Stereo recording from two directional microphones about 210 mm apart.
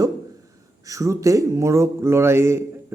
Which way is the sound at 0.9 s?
15° right (ahead or behind).